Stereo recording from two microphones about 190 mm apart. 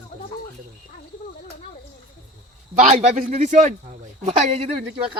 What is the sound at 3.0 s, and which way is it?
Speech, 35° right (ahead or behind).